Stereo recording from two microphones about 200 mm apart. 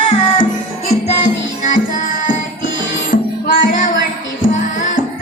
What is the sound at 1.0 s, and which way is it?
Music, 35° left (ahead or behind).